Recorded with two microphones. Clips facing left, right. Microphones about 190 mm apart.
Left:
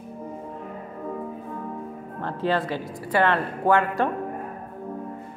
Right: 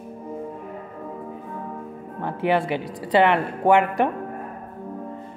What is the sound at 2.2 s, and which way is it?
Speech, 15° right (ahead or behind).